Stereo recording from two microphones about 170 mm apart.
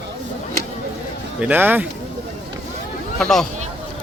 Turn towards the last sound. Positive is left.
turn(degrees=0)  # may be behind; listen again after turning